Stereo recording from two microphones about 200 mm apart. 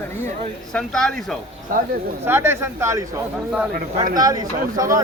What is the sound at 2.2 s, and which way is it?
Speech, 10° right (ahead or behind).